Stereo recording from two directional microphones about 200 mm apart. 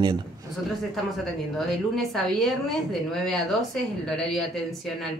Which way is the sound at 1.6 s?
Centre (ahead or behind).